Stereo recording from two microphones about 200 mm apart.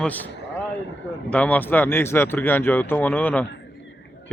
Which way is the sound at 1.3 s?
5° left (ahead or behind).